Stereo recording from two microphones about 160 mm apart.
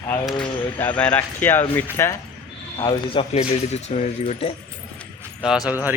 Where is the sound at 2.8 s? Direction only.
25° left (ahead or behind).